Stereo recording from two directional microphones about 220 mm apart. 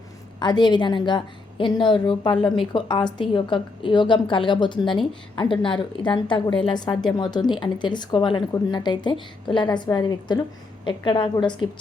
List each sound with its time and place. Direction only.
0.3 s a woman's voice: 20° left (ahead or behind)